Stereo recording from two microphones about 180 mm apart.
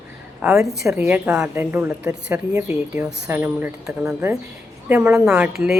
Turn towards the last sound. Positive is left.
turn(degrees=-5)  # may be behind; listen again after turning